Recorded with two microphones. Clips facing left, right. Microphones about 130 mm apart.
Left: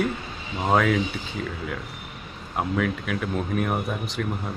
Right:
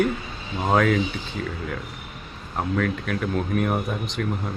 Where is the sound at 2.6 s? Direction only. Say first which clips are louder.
Right 1 dB; 5° left (ahead or behind).